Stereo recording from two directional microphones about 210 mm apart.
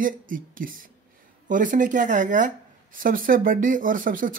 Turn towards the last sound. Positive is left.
turn(degrees=-40)  # may be behind; listen again after turning